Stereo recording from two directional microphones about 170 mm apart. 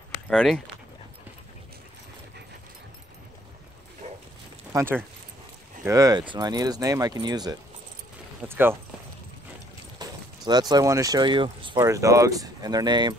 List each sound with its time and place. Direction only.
0.3 s speech: 5° right (ahead or behind)
4.0 s a sound: 40° right (ahead or behind)
4.7 s speech: 15° right (ahead or behind)
8.5 s speech: 15° right (ahead or behind)
9.9 s speech: 25° right (ahead or behind)